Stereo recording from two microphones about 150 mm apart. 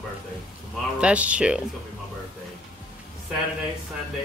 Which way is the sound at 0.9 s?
10° right (ahead or behind).